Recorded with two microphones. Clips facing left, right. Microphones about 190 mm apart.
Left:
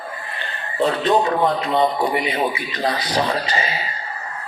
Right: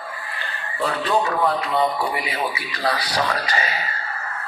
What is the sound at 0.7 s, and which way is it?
A man's voice, 30° left (ahead or behind).